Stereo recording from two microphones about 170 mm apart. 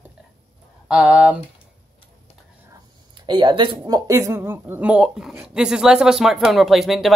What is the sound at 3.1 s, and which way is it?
Speech, 25° right (ahead or behind).